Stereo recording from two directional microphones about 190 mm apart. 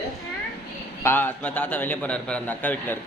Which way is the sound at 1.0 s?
10° left (ahead or behind).